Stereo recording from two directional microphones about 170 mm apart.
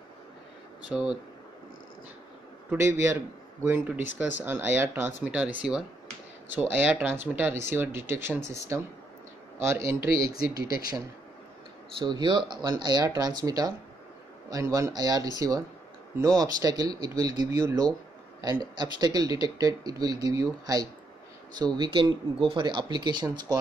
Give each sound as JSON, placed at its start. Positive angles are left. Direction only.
{"t": 0.8, "sound": "speech", "side_deg": -5}
{"t": 2.7, "sound": "a man's voice", "side_deg": -15}
{"t": 10.3, "sound": "speech", "side_deg": 65}
{"t": 12.0, "sound": "speech", "side_deg": -25}
{"t": 21.7, "sound": "speech", "side_deg": -25}